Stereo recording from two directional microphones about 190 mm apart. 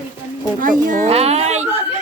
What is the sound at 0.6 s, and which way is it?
Speech, 45° right (ahead or behind).